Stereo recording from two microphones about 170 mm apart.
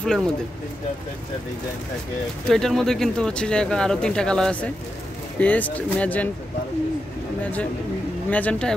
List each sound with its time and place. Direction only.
0.0 s speech: 5° left (ahead or behind)
2.4 s speech: centre (ahead or behind)
8.3 s speech: 10° left (ahead or behind)